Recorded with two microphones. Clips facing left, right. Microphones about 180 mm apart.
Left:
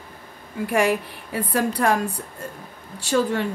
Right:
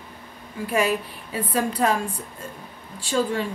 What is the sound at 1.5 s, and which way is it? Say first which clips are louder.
Speech: left 1 dB; 75° left (ahead or behind).